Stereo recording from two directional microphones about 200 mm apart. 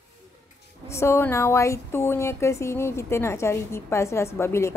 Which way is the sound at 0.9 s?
15° left (ahead or behind).